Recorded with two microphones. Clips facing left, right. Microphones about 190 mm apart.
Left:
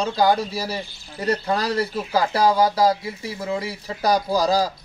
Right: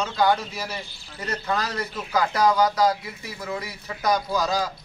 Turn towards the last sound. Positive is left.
turn(degrees=35)  # may be behind; listen again after turning